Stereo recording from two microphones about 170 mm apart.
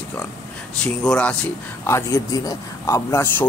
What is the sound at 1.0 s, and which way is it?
Speech, 5° left (ahead or behind).